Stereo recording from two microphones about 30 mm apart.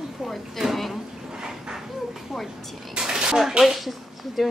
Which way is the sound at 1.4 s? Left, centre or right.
Right.